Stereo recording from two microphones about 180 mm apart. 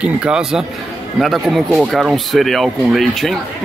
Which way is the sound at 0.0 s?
5° right (ahead or behind).